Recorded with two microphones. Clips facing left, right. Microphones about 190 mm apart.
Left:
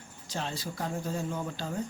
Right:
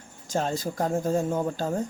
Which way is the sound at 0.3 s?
45° right (ahead or behind).